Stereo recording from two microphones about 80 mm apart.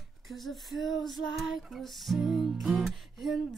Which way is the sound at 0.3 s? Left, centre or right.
Centre.